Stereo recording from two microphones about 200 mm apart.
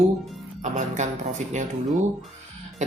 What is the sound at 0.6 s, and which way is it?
Speech, 35° right (ahead or behind).